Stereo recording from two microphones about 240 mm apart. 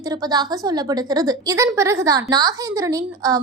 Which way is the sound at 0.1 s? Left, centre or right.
Centre.